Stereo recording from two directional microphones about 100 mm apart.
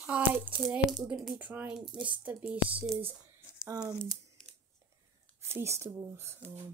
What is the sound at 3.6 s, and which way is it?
Speech, 35° right (ahead or behind).